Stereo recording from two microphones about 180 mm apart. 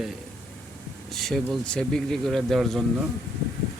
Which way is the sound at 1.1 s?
Centre (ahead or behind).